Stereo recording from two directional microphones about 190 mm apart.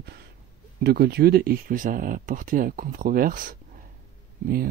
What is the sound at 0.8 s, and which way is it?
Speech, 55° right (ahead or behind).